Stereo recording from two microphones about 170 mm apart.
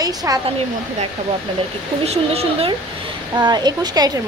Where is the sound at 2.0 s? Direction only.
35° right (ahead or behind).